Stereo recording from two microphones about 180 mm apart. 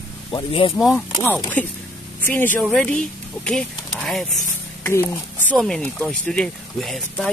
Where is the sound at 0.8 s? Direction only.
Centre (ahead or behind).